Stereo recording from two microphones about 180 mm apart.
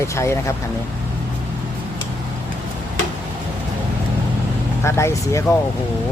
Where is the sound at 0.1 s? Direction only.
15° left (ahead or behind).